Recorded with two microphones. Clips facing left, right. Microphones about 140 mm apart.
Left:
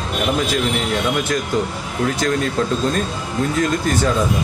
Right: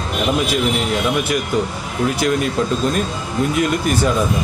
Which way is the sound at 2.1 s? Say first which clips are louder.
Right 2 dB; 15° right (ahead or behind).